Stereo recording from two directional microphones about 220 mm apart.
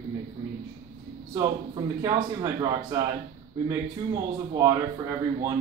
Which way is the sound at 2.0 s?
15° right (ahead or behind).